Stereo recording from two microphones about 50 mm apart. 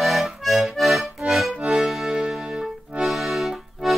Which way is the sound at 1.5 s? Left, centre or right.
Centre.